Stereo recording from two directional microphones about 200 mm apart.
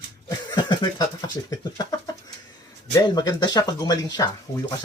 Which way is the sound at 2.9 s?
20° left (ahead or behind).